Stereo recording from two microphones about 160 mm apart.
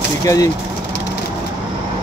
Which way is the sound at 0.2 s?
20° left (ahead or behind).